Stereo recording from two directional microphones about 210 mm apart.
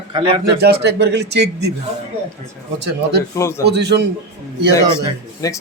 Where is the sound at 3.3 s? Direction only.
15° left (ahead or behind).